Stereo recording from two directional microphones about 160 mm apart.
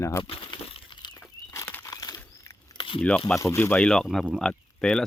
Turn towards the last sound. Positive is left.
turn(degrees=5)  # may be behind; listen again after turning